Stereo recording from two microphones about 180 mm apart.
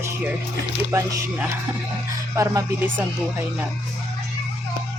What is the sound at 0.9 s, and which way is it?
Speech, 15° right (ahead or behind).